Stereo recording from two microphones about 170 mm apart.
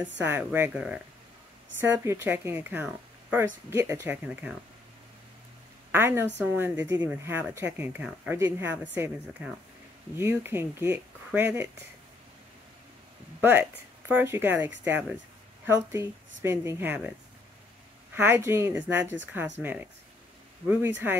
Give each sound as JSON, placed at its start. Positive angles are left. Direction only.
{"t": 0.0, "sound": "speech", "side_deg": -10}
{"t": 5.9, "sound": "a woman's voice", "side_deg": -15}
{"t": 10.1, "sound": "speech", "side_deg": -15}
{"t": 13.4, "sound": "speech", "side_deg": -10}
{"t": 18.1, "sound": "speech", "side_deg": -10}